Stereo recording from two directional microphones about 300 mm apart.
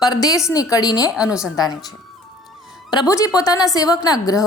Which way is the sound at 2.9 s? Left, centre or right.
Centre.